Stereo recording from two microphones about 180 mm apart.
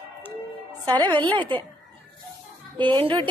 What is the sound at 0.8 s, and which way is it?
Speech, 25° right (ahead or behind).